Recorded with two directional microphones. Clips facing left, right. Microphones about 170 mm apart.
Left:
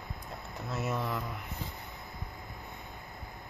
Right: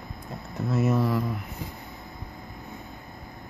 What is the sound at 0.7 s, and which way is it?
Speech, centre (ahead or behind).